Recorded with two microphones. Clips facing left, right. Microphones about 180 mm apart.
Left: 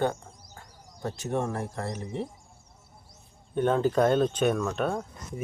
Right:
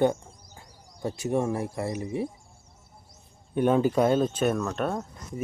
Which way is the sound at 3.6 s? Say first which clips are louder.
Right 1 dB; 10° right (ahead or behind).